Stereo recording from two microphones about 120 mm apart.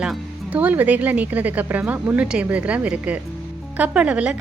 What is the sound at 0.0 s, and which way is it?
Speech, 10° right (ahead or behind).